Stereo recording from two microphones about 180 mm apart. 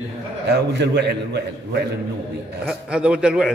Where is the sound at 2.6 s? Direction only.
5° right (ahead or behind).